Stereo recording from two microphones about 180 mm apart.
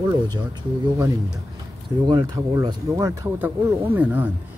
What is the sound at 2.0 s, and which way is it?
Speech, 20° right (ahead or behind).